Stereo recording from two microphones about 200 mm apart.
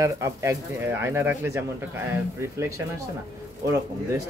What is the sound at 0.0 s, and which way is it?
Speech, 15° right (ahead or behind).